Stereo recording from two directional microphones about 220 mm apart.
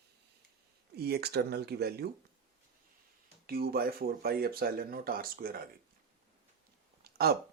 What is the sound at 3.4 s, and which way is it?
Speech, 45° right (ahead or behind).